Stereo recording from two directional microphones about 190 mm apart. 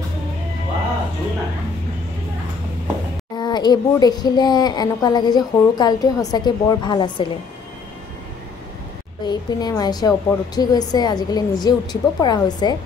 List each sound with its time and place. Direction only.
3.3 s speech: 20° left (ahead or behind)
9.2 s speech: 20° left (ahead or behind)